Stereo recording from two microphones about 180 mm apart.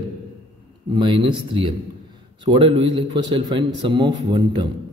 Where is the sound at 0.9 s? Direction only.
25° right (ahead or behind).